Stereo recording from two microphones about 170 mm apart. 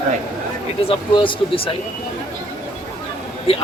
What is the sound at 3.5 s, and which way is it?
Speech, 35° left (ahead or behind).